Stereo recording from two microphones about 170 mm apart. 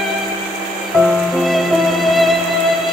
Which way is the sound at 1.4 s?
Centre (ahead or behind).